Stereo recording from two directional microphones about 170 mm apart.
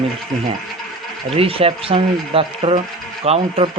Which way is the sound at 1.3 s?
35° right (ahead or behind).